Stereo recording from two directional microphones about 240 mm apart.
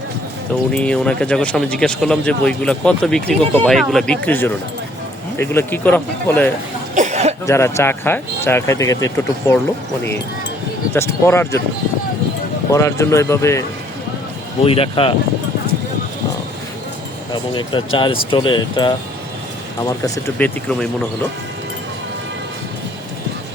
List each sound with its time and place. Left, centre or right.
0.7 s speech: centre
6.9 s cough: right
7.4 s speech: centre
10.9 s speech: centre
12.7 s speech: centre
14.6 s speech: left
17.3 s speech: centre